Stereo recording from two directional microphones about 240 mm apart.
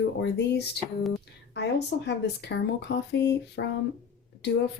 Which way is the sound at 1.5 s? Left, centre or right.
Left.